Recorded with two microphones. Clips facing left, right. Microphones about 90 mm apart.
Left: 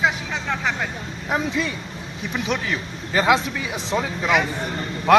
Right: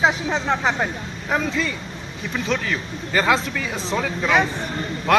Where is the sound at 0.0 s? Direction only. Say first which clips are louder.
Right 3 dB; 30° right (ahead or behind).